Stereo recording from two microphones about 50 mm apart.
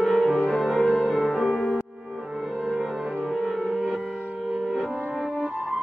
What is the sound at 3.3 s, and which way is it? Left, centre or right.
Music, centre.